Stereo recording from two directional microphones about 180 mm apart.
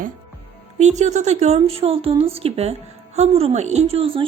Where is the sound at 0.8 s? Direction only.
40° right (ahead or behind).